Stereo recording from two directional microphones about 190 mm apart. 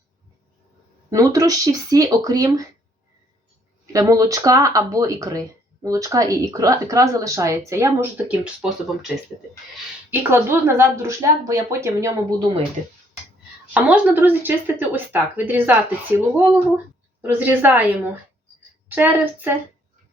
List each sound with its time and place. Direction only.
1.1 s speech: 20° right (ahead or behind)
3.9 s speech: 15° right (ahead or behind)
10.1 s speech: 10° right (ahead or behind)
13.7 s speech: 5° right (ahead or behind)